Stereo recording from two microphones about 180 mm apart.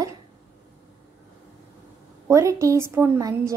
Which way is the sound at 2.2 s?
15° right (ahead or behind).